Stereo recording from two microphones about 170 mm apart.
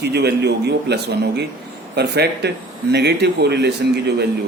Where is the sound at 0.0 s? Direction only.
75° right (ahead or behind).